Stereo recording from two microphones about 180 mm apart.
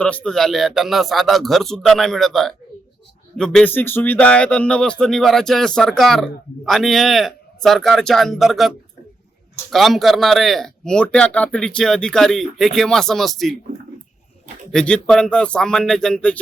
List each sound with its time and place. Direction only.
0.0 s speech: 5° left (ahead or behind)
9.7 s speech: centre (ahead or behind)
14.7 s speech: 5° left (ahead or behind)